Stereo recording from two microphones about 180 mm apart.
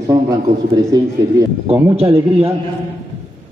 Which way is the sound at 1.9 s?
30° right (ahead or behind).